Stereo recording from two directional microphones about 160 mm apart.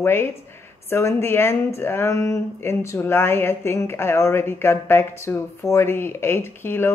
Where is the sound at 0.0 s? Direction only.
15° left (ahead or behind).